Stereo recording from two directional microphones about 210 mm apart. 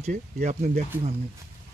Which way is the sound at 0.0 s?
30° right (ahead or behind).